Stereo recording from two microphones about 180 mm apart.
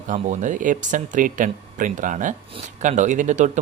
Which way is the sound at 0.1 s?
45° right (ahead or behind).